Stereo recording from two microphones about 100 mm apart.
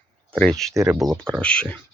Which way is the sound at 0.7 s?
30° right (ahead or behind).